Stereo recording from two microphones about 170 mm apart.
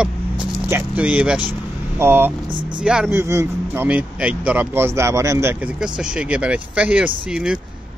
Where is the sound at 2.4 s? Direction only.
30° right (ahead or behind).